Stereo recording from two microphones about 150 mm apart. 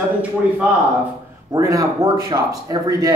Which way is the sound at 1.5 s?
20° right (ahead or behind).